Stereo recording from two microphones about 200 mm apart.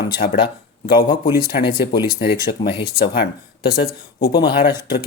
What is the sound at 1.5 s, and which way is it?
Speech, 55° left (ahead or behind).